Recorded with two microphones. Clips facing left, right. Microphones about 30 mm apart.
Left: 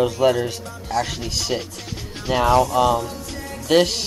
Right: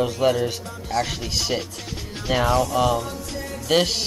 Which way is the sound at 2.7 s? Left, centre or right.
Centre.